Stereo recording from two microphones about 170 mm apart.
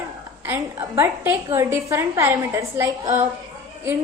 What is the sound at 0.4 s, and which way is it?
A woman's voice, 15° right (ahead or behind).